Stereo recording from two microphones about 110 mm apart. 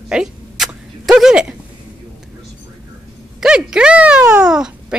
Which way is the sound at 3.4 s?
5° right (ahead or behind).